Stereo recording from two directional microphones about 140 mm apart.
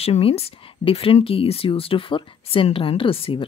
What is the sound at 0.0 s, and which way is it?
Speech, 45° left (ahead or behind).